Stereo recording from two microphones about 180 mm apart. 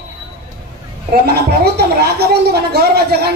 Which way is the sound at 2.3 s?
60° right (ahead or behind).